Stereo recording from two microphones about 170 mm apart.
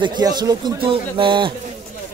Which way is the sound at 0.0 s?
25° right (ahead or behind).